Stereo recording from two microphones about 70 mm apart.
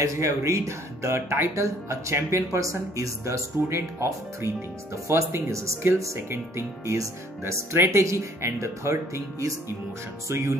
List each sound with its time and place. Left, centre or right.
0.0 s speech: right